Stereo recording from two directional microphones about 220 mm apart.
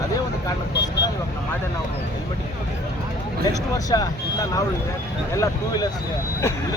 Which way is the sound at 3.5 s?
15° left (ahead or behind).